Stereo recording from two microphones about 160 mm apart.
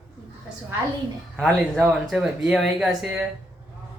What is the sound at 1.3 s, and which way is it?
Speech, centre (ahead or behind).